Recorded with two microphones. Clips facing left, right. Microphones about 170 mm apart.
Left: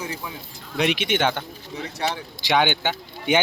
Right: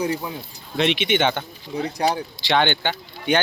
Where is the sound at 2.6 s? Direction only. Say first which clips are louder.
Right 1 dB; 10° left (ahead or behind).